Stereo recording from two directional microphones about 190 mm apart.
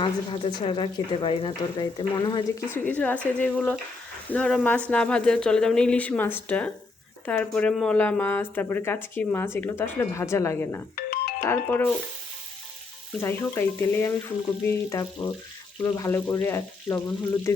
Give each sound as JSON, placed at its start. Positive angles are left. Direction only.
{"t": 0.0, "sound": "speech", "side_deg": 25}
{"t": 2.6, "sound": "speech", "side_deg": 10}
{"t": 10.9, "sound": "ringtone", "side_deg": 55}
{"t": 11.4, "sound": "speech", "side_deg": 10}
{"t": 13.1, "sound": "speech", "side_deg": 15}